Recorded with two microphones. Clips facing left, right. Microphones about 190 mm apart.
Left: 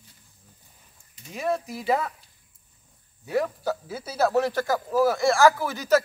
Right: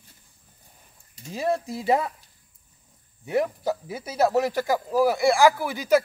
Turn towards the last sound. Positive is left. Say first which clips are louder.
# right 1 dB
turn(degrees=-15)  # may be behind; listen again after turning